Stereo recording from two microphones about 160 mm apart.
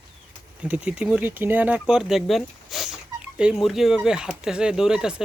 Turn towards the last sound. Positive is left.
turn(degrees=-5)  # may be behind; listen again after turning